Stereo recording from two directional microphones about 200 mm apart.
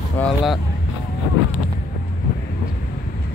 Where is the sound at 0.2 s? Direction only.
10° left (ahead or behind).